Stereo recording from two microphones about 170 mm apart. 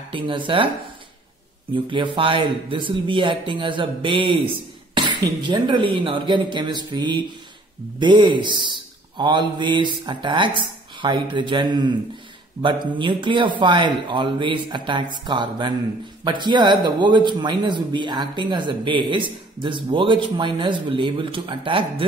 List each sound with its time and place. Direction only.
0.1 s speech: 30° right (ahead or behind)
1.7 s speech: 30° right (ahead or behind)